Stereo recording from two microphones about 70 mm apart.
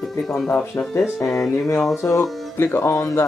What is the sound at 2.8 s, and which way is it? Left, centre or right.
Speech, left.